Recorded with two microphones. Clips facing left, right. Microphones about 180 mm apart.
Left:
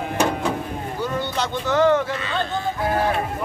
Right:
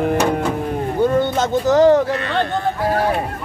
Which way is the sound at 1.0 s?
50° right (ahead or behind).